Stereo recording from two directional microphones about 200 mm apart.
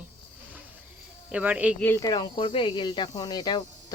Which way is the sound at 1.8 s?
15° left (ahead or behind).